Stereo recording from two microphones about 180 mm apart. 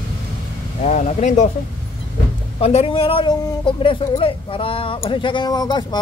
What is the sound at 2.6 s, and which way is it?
Speech, 35° left (ahead or behind).